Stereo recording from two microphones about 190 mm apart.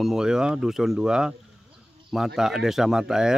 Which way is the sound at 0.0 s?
5° right (ahead or behind).